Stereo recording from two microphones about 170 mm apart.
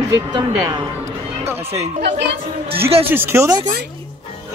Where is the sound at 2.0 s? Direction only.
90° right.